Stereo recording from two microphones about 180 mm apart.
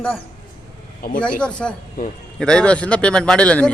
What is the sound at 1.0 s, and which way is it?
Speech, 50° left (ahead or behind).